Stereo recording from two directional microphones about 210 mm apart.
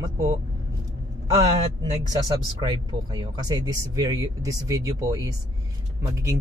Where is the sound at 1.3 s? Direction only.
20° right (ahead or behind).